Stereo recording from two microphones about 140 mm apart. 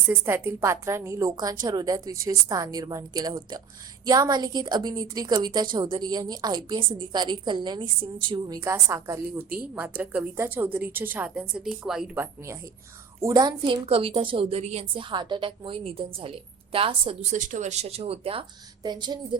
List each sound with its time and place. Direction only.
0.1 s a woman's voice: 15° right (ahead or behind)
12.1 s a woman's voice: 15° right (ahead or behind); by 15.0 s 50° right (ahead or behind)
15.1 s a woman's voice: 35° right (ahead or behind)
17.3 s speech: 65° right (ahead or behind); by 18.4 s 40° right (ahead or behind)
18.8 s a woman's voice: 30° right (ahead or behind)